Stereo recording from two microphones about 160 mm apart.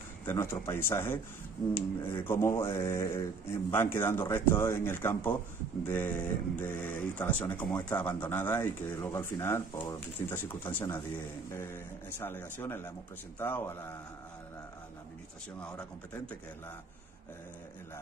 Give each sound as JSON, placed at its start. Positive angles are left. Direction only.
{"t": 0.3, "sound": "speech", "side_deg": 15}